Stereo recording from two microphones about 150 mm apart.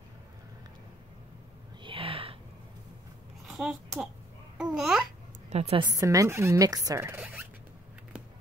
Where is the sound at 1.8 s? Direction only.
35° right (ahead or behind).